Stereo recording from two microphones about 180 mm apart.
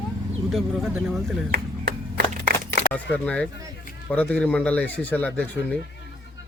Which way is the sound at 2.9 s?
10° left (ahead or behind).